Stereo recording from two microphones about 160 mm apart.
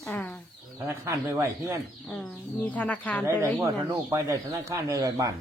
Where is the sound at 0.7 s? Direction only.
20° right (ahead or behind).